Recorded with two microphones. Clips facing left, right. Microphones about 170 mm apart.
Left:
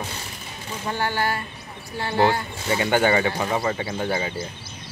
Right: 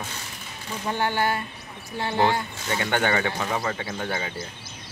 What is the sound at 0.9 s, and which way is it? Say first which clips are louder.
Speech: even; 20° right (ahead or behind).